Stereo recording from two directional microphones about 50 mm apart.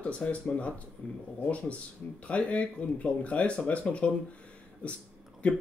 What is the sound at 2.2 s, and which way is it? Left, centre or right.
Speech, left.